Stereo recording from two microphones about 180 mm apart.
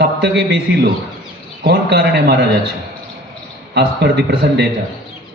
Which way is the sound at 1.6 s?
70° right (ahead or behind).